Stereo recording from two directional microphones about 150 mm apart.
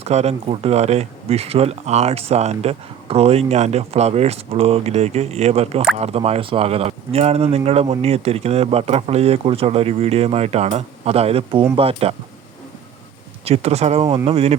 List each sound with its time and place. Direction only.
0.0 s speech: 45° right (ahead or behind)
13.4 s speech: 45° right (ahead or behind)